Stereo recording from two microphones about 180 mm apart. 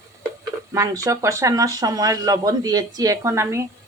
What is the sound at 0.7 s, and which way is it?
Speech, 20° right (ahead or behind).